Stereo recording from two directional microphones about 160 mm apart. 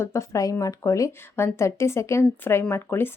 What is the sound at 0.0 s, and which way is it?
Speech, 15° left (ahead or behind).